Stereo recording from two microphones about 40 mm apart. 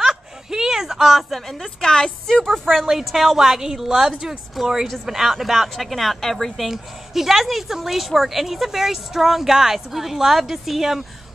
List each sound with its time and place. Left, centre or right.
0.0 s a sound: centre
1.3 s a woman's voice: centre
1.8 s a woman's voice: centre
6.5 s speech: centre